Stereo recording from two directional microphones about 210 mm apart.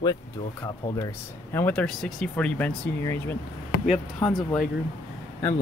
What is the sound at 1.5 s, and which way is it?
Speech, 10° left (ahead or behind).